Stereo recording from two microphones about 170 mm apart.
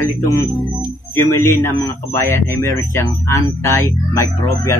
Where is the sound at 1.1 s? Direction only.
15° left (ahead or behind).